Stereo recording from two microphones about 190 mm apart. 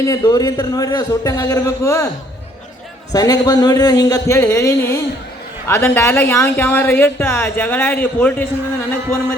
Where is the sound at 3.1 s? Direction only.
20° left (ahead or behind).